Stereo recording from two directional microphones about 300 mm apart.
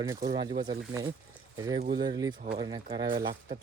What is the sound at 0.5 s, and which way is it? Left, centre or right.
Speech, right.